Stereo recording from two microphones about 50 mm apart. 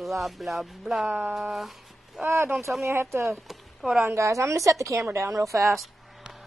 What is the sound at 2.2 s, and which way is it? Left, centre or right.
A woman's voice, right.